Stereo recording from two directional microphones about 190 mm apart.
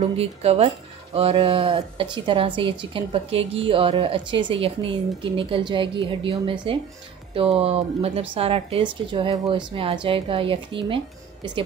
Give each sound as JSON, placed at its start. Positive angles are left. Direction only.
{"t": 0.0, "sound": "a woman's voice", "side_deg": -35}